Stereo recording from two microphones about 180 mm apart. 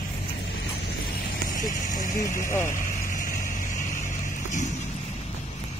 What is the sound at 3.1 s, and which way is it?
Vehicle, 50° left (ahead or behind).